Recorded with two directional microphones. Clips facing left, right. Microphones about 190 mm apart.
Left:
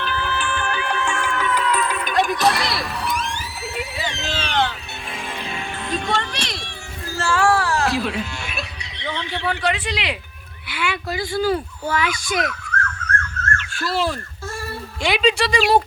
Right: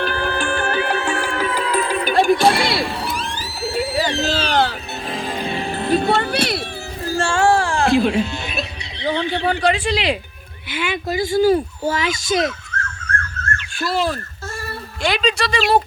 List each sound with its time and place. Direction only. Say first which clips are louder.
0.0 s music: right 4 dB; 40° right (ahead or behind); by 8.6 s 25° right (ahead or behind)
9.0 s speech: right 6 dB; 35° right (ahead or behind)
13.6 s a sound: right 3 dB; 15° right (ahead or behind)
15.0 s speech: left 1 dB; 5° left (ahead or behind)